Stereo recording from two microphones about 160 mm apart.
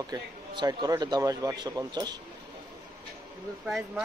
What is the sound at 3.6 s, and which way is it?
Speech, centre (ahead or behind).